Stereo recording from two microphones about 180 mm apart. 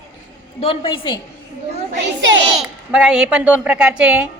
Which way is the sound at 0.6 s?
30° left (ahead or behind).